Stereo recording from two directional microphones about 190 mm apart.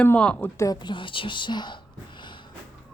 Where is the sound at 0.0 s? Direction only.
5° left (ahead or behind).